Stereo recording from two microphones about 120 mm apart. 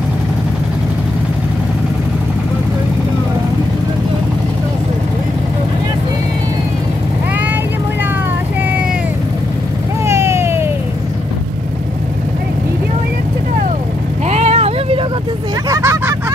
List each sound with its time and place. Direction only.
10.0 s vehicle: 20° right (ahead or behind)
14.3 s vehicle: 65° right (ahead or behind)
15.7 s vehicle: 25° right (ahead or behind)